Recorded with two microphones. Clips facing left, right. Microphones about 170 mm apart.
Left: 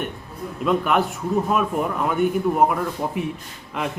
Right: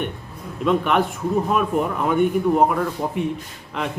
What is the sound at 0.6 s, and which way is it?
A man's voice, centre (ahead or behind).